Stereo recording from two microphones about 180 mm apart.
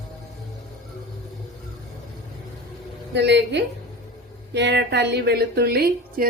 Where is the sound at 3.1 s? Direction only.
70° right (ahead or behind).